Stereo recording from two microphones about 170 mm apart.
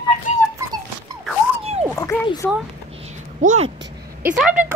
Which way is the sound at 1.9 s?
15° left (ahead or behind).